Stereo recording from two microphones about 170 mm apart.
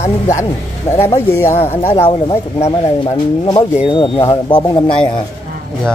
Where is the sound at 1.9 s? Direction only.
30° left (ahead or behind).